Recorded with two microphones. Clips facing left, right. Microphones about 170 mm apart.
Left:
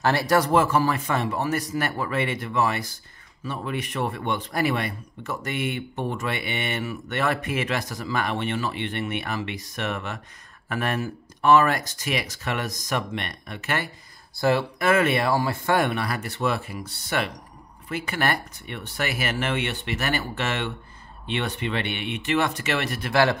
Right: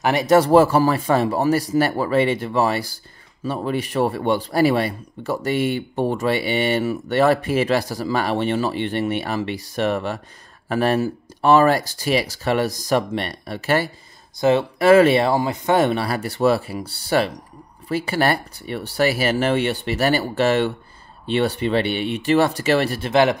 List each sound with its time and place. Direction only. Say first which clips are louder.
0.0 s speech: right 5 dB; 15° right (ahead or behind)
0.5 s speech: right 7 dB; 35° right (ahead or behind)
14.3 s speech: right 5 dB; 20° right (ahead or behind)